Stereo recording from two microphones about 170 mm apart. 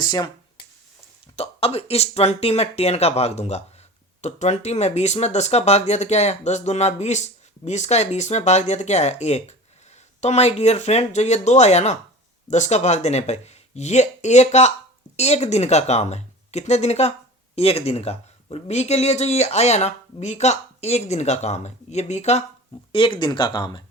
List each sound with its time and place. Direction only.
0.0 s a sound: 25° left (ahead or behind)
1.4 s speech: 35° left (ahead or behind)
22.9 s speech: 30° left (ahead or behind)